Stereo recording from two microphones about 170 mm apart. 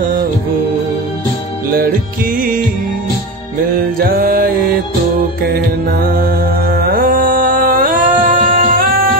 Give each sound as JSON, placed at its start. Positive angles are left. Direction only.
{"t": 1.7, "sound": "music", "side_deg": -60}
{"t": 4.0, "sound": "music", "side_deg": -60}
{"t": 5.5, "sound": "music", "side_deg": -60}